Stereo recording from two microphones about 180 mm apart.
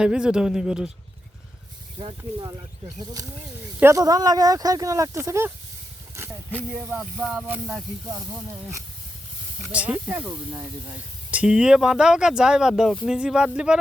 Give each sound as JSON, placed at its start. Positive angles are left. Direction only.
{"t": 0.0, "sound": "speech", "side_deg": -5}
{"t": 2.0, "sound": "speech", "side_deg": -25}
{"t": 3.8, "sound": "speech", "side_deg": -15}
{"t": 9.6, "sound": "speech", "side_deg": -5}
{"t": 11.3, "sound": "speech", "side_deg": -5}